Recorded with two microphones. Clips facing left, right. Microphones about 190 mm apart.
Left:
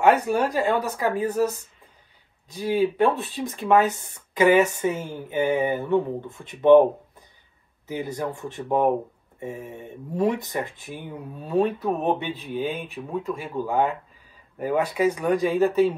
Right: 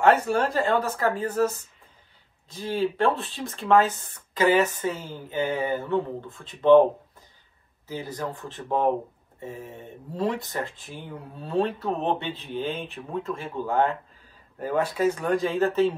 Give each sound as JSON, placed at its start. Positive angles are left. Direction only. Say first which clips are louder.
{"t": 0.0, "sound": "speech", "louder": "left 1 dB", "side_deg": 15}